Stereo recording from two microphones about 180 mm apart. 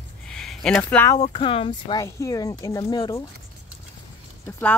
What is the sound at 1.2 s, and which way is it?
Speech, 30° left (ahead or behind).